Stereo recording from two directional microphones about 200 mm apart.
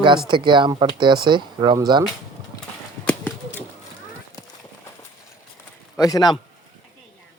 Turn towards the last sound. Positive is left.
turn(degrees=20)  # may be behind; listen again after turning